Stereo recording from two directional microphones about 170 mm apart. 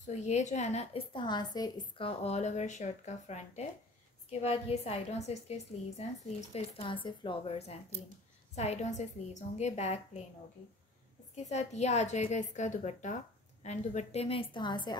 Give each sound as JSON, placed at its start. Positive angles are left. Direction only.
{"t": 0.0, "sound": "a woman's voice", "side_deg": 45}
{"t": 11.4, "sound": "a woman's voice", "side_deg": 40}